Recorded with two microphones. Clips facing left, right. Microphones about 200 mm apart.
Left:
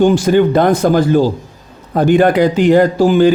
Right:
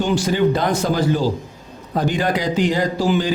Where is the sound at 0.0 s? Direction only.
50° left (ahead or behind).